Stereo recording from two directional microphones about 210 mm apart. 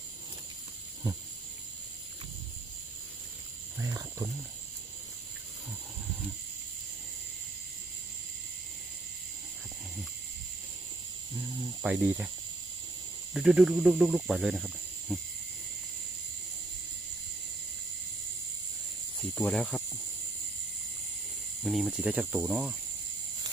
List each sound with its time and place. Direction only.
3.8 s wild animals: 15° right (ahead or behind)
11.8 s speech: 5° right (ahead or behind)
13.3 s speech: centre (ahead or behind)
19.3 s speech: 5° left (ahead or behind)
21.6 s speech: centre (ahead or behind)